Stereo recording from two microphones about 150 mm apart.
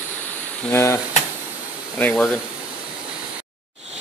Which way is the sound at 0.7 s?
15° left (ahead or behind).